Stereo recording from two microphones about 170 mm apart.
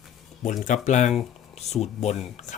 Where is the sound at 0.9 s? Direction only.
45° left (ahead or behind).